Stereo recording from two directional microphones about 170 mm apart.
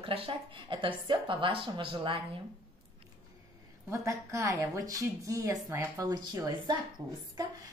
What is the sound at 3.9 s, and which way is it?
A woman's voice, 15° right (ahead or behind).